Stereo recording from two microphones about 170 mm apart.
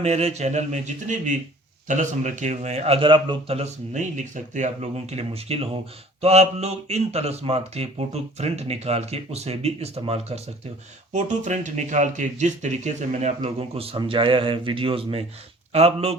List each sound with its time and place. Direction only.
0.0 s speech: 40° right (ahead or behind)